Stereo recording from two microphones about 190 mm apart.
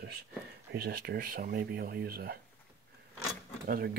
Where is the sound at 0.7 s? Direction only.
55° right (ahead or behind).